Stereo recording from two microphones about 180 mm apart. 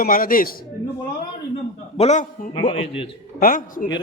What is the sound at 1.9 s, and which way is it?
A man's voice, 35° left (ahead or behind).